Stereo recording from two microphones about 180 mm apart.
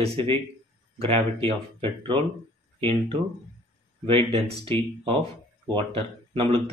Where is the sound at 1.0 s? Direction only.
30° right (ahead or behind).